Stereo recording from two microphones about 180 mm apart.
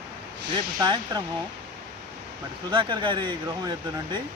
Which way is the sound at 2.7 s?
25° right (ahead or behind).